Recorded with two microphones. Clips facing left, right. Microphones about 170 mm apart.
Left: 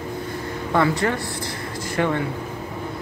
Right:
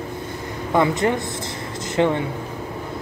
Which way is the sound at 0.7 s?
20° right (ahead or behind).